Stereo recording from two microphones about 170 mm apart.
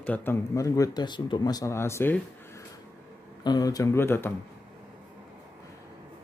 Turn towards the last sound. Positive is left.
turn(degrees=15)  # may be behind; listen again after turning